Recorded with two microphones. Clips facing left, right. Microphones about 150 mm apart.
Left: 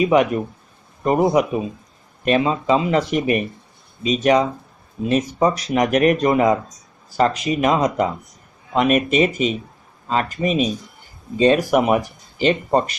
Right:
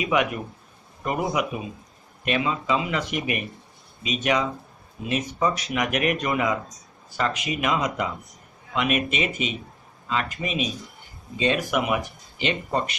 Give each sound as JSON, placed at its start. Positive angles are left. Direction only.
{"t": 0.0, "sound": "speech", "side_deg": 35}